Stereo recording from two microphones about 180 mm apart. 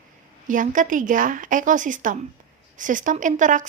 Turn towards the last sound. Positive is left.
turn(degrees=-45)  # may be behind; listen again after turning